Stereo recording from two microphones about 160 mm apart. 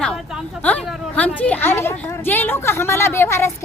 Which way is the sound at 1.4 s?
10° left (ahead or behind).